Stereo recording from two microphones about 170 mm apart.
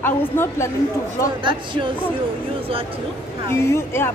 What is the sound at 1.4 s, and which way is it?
Speech, 30° right (ahead or behind).